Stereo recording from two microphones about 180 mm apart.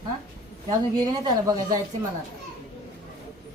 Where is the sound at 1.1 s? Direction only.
20° right (ahead or behind).